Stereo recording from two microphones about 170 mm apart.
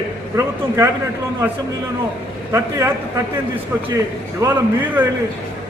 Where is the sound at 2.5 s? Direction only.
15° right (ahead or behind).